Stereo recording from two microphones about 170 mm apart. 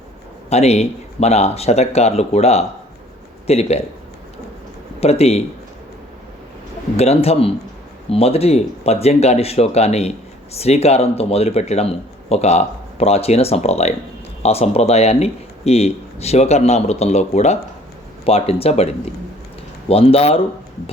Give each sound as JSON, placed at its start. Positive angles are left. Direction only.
{"t": 0.5, "sound": "speech", "side_deg": 40}
{"t": 4.9, "sound": "speech", "side_deg": 35}
{"t": 6.9, "sound": "speech", "side_deg": 35}